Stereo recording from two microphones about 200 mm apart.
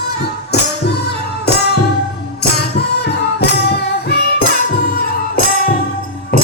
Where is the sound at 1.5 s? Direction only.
55° left (ahead or behind).